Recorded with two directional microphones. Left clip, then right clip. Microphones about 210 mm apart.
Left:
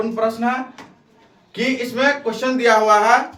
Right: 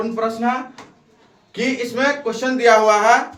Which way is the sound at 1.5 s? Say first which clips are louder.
Even; 10° right (ahead or behind).